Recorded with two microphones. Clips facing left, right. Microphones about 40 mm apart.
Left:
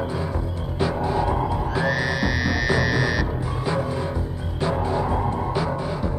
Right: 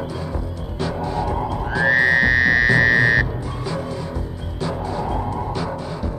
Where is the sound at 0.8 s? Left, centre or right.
Centre.